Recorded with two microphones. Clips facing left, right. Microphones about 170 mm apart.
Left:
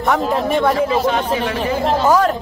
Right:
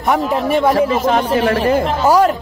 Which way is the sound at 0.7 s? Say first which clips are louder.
Right 2 dB; 45° right (ahead or behind).